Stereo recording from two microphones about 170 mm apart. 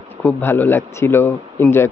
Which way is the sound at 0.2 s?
10° left (ahead or behind).